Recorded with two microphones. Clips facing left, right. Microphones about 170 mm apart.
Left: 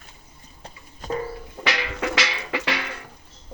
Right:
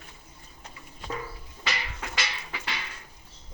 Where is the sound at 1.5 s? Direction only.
70° left (ahead or behind).